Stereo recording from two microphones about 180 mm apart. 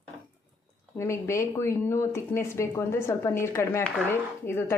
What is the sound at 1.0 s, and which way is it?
Speech, 15° left (ahead or behind).